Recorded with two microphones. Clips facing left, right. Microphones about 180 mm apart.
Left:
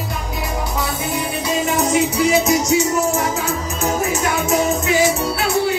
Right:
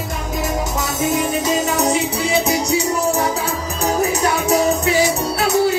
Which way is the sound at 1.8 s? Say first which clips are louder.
Left 2 dB; 35° right (ahead or behind).